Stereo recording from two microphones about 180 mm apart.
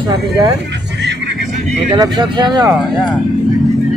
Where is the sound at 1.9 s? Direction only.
25° right (ahead or behind).